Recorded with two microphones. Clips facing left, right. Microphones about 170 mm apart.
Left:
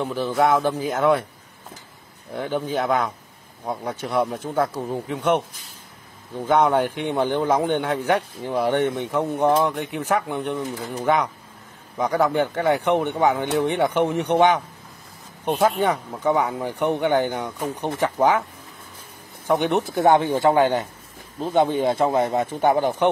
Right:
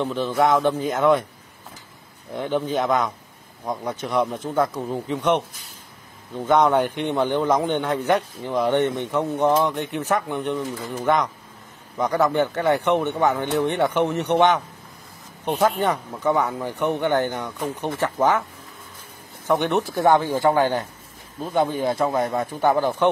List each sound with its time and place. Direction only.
0.0 s speech: 10° left (ahead or behind)
2.5 s a man's voice: 5° left (ahead or behind)
6.4 s speech: 10° left (ahead or behind)
15.6 s speech: 10° left (ahead or behind)
19.4 s speech: 15° left (ahead or behind)